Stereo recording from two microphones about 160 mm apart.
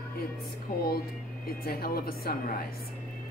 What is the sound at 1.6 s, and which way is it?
A woman's voice, 70° left (ahead or behind).